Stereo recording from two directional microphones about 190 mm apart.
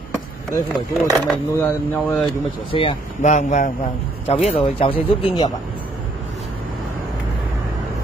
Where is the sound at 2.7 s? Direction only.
35° left (ahead or behind).